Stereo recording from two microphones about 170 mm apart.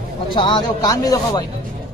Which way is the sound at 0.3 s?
25° left (ahead or behind).